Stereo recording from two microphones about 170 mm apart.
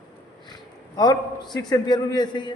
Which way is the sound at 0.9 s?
25° left (ahead or behind).